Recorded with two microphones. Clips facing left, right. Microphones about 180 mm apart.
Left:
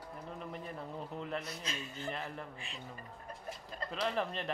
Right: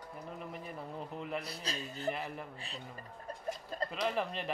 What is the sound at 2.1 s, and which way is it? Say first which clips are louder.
Speech: right 4 dB; 5° right (ahead or behind).